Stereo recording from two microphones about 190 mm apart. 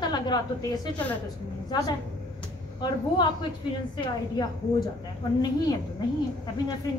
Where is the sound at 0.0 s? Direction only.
20° left (ahead or behind).